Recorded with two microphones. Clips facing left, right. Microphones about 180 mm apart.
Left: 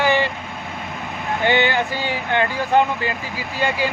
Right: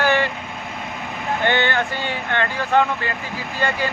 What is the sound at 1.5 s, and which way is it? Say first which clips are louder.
Speech: left 3 dB; 5° left (ahead or behind).